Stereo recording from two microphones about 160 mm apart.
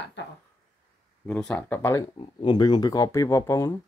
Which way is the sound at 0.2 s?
90° left.